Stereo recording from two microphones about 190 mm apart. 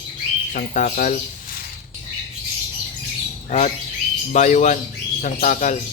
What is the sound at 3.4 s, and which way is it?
Speech, 40° left (ahead or behind).